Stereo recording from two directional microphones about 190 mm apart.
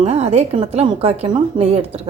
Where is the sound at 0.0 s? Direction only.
35° right (ahead or behind).